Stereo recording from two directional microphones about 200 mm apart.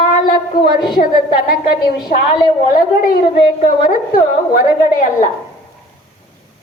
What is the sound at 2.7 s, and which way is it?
A woman's voice, 45° left (ahead or behind).